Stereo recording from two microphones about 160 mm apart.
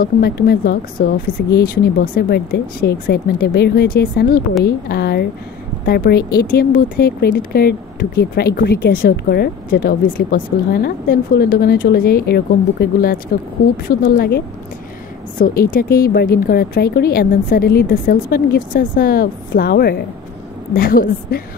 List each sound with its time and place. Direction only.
0.0 s speech: 75° left (ahead or behind)
2.1 s speech: 90° left
13.8 s speech: 65° left (ahead or behind)
20.7 s speech: 65° left (ahead or behind)